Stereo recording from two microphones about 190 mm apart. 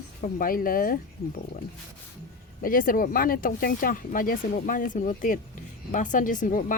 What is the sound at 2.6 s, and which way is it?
Speech, 45° left (ahead or behind).